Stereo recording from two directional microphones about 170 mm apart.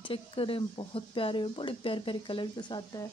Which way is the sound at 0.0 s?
30° left (ahead or behind).